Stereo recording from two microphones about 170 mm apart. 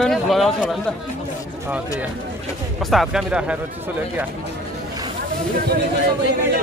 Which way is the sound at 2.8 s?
Centre (ahead or behind).